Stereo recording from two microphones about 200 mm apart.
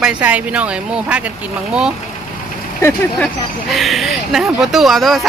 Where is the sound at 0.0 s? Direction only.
5° right (ahead or behind).